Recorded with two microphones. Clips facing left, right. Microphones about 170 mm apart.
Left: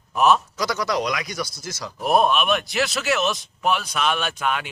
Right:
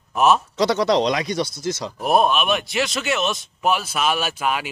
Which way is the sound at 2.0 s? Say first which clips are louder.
Right 1 dB; centre (ahead or behind).